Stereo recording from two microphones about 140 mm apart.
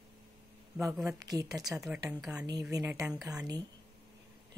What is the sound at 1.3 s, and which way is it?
Speech, 25° right (ahead or behind).